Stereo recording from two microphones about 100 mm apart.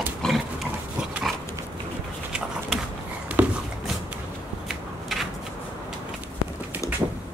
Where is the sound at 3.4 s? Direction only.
20° right (ahead or behind).